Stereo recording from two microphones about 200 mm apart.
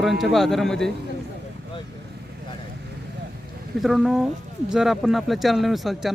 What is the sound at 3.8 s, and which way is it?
Speech, centre (ahead or behind).